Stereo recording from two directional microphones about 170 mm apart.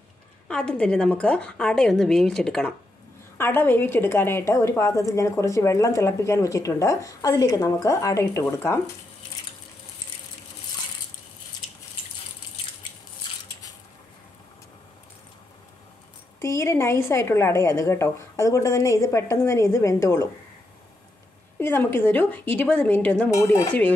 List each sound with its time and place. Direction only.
0.5 s a woman's voice: 5° left (ahead or behind)
16.3 s a woman's voice: 15° left (ahead or behind)
21.5 s a woman's voice: 15° left (ahead or behind)